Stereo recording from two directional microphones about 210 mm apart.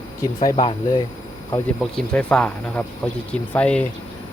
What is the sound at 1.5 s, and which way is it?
Speech, 5° left (ahead or behind).